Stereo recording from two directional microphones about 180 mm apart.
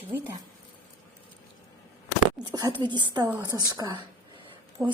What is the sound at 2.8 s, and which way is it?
A woman's voice, 25° right (ahead or behind).